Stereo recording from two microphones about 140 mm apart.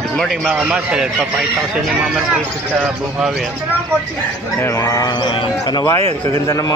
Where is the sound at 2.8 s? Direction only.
5° right (ahead or behind).